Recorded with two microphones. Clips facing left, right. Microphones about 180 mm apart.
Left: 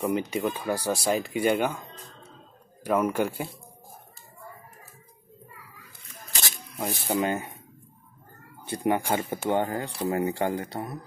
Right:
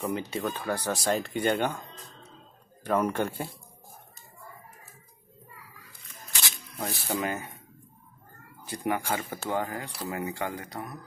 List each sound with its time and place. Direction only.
0.3 s speech: 10° left (ahead or behind)
2.8 s speech: 5° left (ahead or behind)
6.8 s speech: 25° left (ahead or behind)
8.6 s speech: 25° left (ahead or behind)